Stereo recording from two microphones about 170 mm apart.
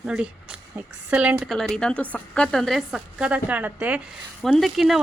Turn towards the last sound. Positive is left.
turn(degrees=0)  # may be behind; listen again after turning